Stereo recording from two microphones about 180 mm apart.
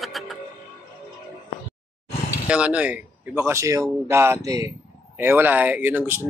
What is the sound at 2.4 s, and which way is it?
Speech, 5° right (ahead or behind).